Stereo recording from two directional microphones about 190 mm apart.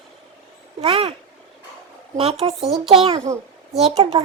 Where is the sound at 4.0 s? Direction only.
30° right (ahead or behind).